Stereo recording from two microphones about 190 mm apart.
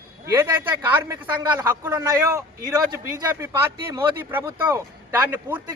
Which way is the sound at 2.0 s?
15° right (ahead or behind).